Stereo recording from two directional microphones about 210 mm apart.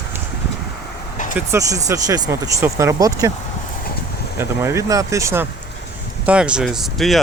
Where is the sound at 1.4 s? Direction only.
15° right (ahead or behind).